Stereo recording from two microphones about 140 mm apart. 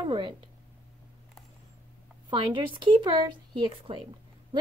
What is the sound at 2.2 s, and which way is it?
A woman's voice, 35° right (ahead or behind).